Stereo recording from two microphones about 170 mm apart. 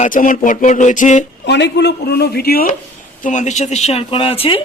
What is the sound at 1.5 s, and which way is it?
Speech, 85° left.